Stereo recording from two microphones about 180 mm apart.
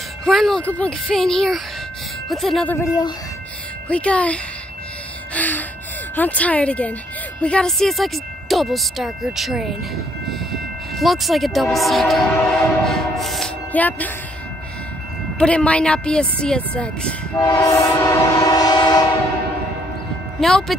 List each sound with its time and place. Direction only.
0.2 s speech: centre (ahead or behind)
3.9 s speech: 5° left (ahead or behind)
5.3 s gasp: 10° left (ahead or behind)
6.1 s speech: 10° left (ahead or behind)
12.8 s train: centre (ahead or behind)
15.3 s speech: 5° left (ahead or behind)
17.4 s train: 20° left (ahead or behind)
20.3 s speech: centre (ahead or behind)